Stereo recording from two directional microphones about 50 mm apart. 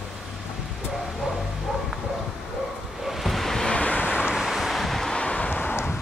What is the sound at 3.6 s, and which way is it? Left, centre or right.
Vehicle, left.